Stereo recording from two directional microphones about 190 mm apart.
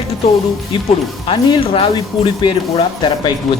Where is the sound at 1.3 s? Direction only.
25° left (ahead or behind).